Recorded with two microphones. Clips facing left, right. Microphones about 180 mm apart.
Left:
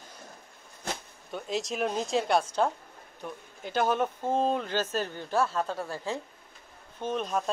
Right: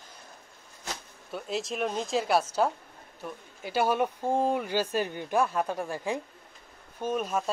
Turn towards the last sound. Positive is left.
turn(degrees=-5)  # may be behind; listen again after turning